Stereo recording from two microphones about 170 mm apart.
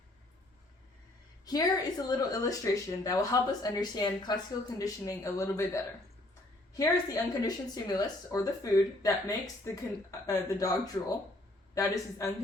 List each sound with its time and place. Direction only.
1.5 s a woman's voice: 25° left (ahead or behind)